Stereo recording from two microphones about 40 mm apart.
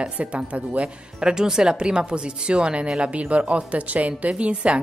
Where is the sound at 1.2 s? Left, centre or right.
Centre.